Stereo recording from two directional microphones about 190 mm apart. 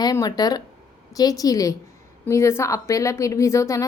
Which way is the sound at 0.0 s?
20° left (ahead or behind).